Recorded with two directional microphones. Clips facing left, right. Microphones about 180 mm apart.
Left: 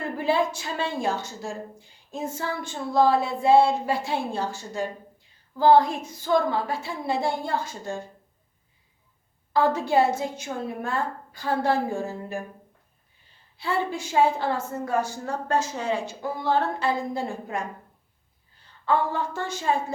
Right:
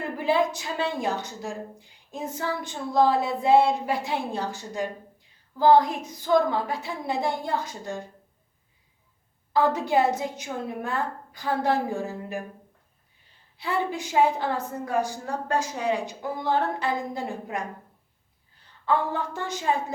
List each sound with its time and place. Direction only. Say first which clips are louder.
0.2 s a woman's voice: right 1 dB; 15° right (ahead or behind)
9.5 s a woman's voice: left 1 dB; 15° right (ahead or behind)
13.6 s a woman's voice: left 1 dB; 15° right (ahead or behind)
18.9 s a woman's voice: left 1 dB; 15° right (ahead or behind)